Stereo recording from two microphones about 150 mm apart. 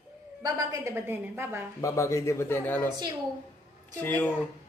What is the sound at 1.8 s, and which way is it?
A man's voice, 20° left (ahead or behind).